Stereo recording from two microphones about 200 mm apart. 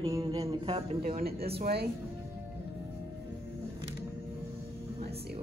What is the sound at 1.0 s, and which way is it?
Speech, 50° right (ahead or behind).